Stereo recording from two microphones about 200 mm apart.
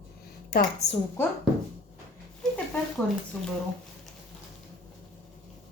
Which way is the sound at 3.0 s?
5° left (ahead or behind).